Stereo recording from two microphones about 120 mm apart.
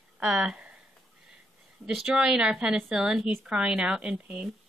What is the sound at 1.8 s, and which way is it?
A woman's voice, 5° right (ahead or behind).